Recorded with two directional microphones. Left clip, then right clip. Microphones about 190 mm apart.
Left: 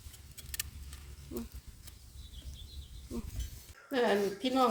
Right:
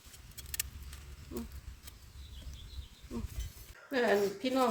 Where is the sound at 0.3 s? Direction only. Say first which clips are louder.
Right 1 dB; 5° left (ahead or behind).